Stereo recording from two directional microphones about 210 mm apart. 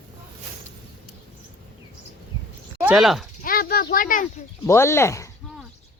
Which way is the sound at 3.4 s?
45° left (ahead or behind).